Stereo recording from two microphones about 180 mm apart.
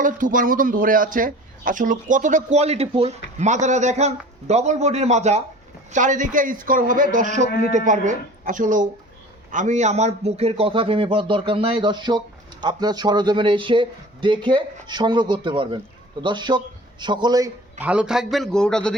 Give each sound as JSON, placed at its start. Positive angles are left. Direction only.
{"t": 0.0, "sound": "a man's voice", "side_deg": -50}
{"t": 17.7, "sound": "a man's voice", "side_deg": -5}